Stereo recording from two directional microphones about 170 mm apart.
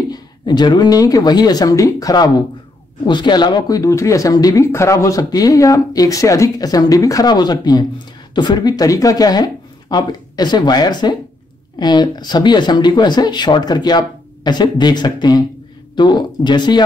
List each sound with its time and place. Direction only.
0.1 s speech: 25° left (ahead or behind)